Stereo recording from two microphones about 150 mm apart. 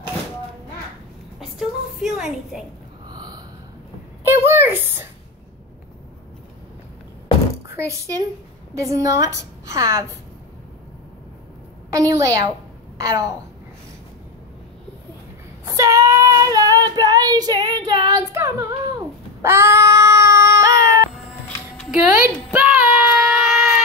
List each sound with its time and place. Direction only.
1.4 s a sound: centre (ahead or behind)
3.1 s gasp: 25° right (ahead or behind)
4.5 s speech: 15° right (ahead or behind)
7.6 s a child's voice: 20° right (ahead or behind)
11.9 s a woman's voice: 20° right (ahead or behind)
15.6 s child singing: 20° right (ahead or behind)
22.1 s child singing: 10° right (ahead or behind)